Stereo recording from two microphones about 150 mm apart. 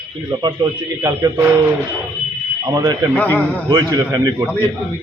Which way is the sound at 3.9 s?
25° right (ahead or behind).